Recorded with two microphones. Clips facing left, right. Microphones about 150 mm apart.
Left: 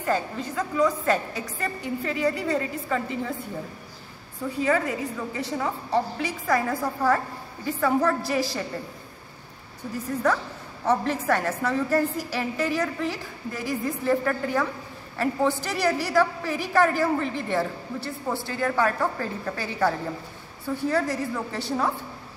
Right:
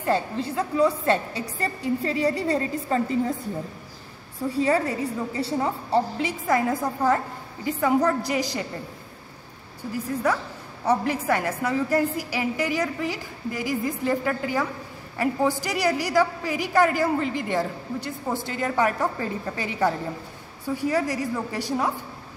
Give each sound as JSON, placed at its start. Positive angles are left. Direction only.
{"t": 0.0, "sound": "a woman's voice", "side_deg": -30}
{"t": 4.4, "sound": "a woman's voice", "side_deg": -30}
{"t": 9.9, "sound": "a woman's voice", "side_deg": -10}